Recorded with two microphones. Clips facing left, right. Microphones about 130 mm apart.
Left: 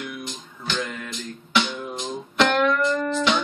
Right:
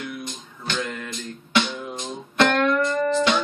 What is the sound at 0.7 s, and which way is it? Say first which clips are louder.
Music: right 1 dB; centre (ahead or behind).